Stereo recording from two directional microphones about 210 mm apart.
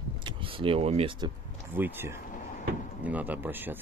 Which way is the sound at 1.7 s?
10° right (ahead or behind).